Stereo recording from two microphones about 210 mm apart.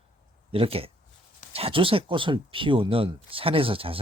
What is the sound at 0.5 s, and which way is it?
Speech, 25° right (ahead or behind).